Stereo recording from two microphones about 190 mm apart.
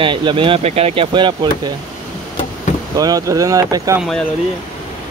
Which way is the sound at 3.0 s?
20° right (ahead or behind).